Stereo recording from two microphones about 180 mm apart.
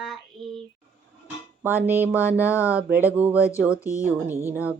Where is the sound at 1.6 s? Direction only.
10° right (ahead or behind).